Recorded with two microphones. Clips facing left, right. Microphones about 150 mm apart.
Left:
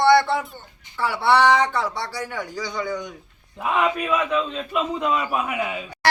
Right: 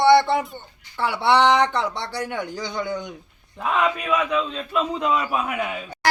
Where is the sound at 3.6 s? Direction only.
5° left (ahead or behind).